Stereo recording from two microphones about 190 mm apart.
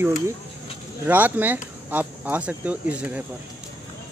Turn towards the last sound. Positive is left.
turn(degrees=-10)  # may be behind; listen again after turning